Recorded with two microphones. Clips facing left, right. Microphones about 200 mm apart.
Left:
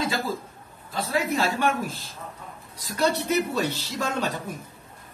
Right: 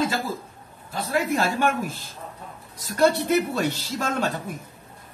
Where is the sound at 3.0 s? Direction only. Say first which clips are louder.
Right 4 dB; 50° right (ahead or behind).